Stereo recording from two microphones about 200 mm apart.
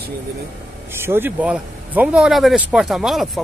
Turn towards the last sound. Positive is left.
turn(degrees=0)  # may be behind; listen again after turning